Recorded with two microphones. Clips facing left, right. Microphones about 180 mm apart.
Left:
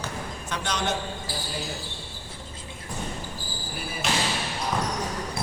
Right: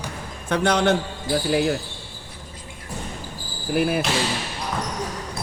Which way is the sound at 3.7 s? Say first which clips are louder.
Right 17 dB; 65° right (ahead or behind).